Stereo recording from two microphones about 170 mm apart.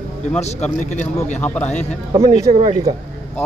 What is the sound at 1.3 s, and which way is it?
Speech, 10° left (ahead or behind).